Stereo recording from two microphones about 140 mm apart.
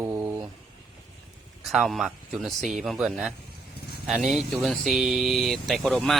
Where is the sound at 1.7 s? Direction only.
Centre (ahead or behind).